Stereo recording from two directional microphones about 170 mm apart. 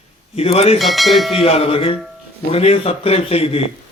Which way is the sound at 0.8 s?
Centre (ahead or behind).